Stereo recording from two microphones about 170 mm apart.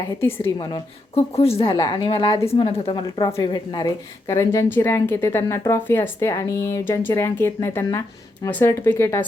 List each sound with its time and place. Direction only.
0.2 s speech: 15° left (ahead or behind)
0.6 s speech: 30° left (ahead or behind); by 9.2 s 15° left (ahead or behind)